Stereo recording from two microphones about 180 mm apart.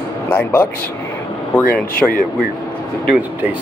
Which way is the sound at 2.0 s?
Centre (ahead or behind).